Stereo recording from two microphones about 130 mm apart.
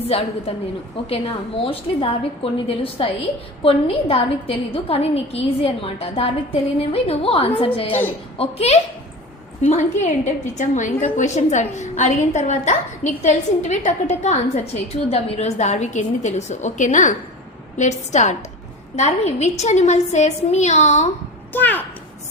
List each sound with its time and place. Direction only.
0.1 s a woman's voice: 50° left (ahead or behind)
10.6 s a woman's voice: 70° left (ahead or behind)
21.5 s a child's voice: 15° left (ahead or behind)